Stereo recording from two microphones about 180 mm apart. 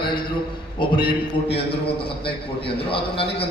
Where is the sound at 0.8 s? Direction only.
25° left (ahead or behind).